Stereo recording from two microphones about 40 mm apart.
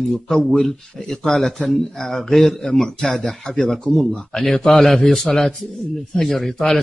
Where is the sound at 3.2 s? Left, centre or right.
Centre.